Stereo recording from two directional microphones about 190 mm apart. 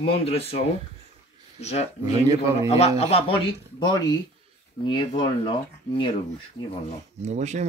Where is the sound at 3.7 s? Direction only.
20° left (ahead or behind).